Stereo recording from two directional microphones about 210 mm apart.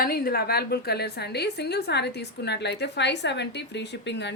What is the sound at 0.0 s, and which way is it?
A woman's voice, 45° left (ahead or behind).